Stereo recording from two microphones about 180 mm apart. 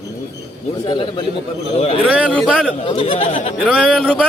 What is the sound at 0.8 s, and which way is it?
Speech, 30° left (ahead or behind).